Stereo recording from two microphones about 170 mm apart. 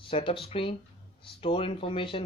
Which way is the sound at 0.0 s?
35° left (ahead or behind).